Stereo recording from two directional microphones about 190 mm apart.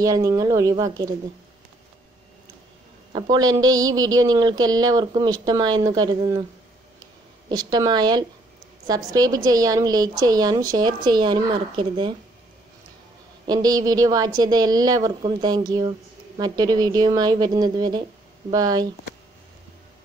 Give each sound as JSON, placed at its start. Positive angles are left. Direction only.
{"t": 0.0, "sound": "speech", "side_deg": -20}
{"t": 3.1, "sound": "speech", "side_deg": -25}
{"t": 7.4, "sound": "speech", "side_deg": -20}
{"t": 13.5, "sound": "speech", "side_deg": -20}